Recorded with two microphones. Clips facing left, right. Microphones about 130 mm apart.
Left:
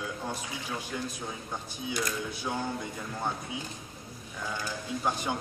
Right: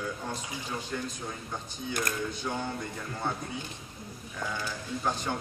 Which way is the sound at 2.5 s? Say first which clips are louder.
Left 2 dB; 15° left (ahead or behind).